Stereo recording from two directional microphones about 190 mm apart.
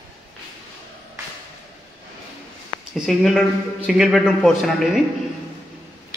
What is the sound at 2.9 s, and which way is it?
A man's voice, centre (ahead or behind).